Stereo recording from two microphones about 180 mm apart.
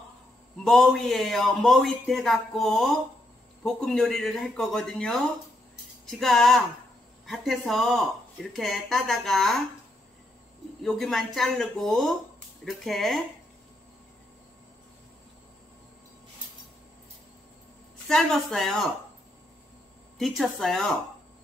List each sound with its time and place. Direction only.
0.7 s speech: centre (ahead or behind)
10.8 s speech: centre (ahead or behind)
18.0 s speech: centre (ahead or behind)
20.2 s speech: centre (ahead or behind)